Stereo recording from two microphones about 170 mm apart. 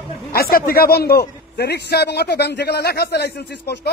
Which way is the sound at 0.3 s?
60° left (ahead or behind).